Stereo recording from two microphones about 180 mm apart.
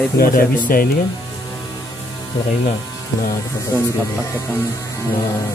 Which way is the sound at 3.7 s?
15° left (ahead or behind).